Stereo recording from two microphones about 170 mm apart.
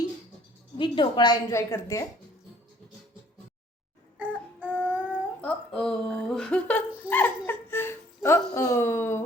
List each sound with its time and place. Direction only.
0.8 s a woman's voice: 25° left (ahead or behind)
4.2 s child singing: 10° right (ahead or behind)
5.4 s speech: 5° left (ahead or behind)